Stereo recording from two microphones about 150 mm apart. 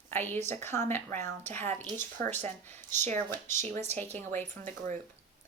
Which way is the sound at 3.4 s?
50° right (ahead or behind).